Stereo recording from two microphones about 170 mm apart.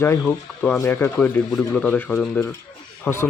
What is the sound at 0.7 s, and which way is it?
A man's voice, 15° left (ahead or behind).